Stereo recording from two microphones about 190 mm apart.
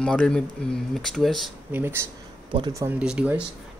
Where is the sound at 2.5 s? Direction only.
25° right (ahead or behind).